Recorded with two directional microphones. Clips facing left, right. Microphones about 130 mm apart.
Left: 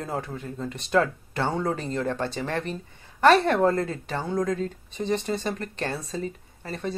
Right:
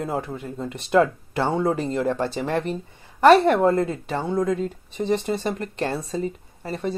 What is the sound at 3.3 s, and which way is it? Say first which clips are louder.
A woman's voice: right 4 dB; 25° right (ahead or behind).